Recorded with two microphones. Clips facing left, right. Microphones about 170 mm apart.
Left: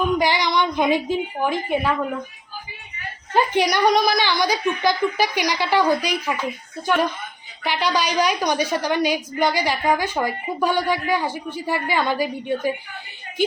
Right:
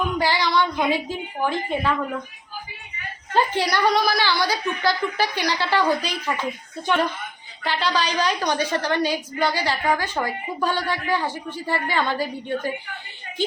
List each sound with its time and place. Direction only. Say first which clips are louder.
0.2 s a woman's voice: left 1 dB; 15° left (ahead or behind)
3.3 s a woman's voice: left 2 dB; 15° left (ahead or behind)